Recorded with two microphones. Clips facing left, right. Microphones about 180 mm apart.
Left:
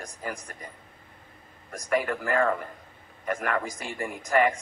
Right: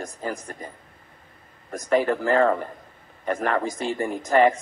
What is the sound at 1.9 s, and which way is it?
Speech, 35° right (ahead or behind).